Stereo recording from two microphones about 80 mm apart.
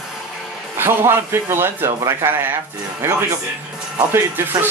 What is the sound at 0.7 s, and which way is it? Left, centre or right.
A man's voice, right.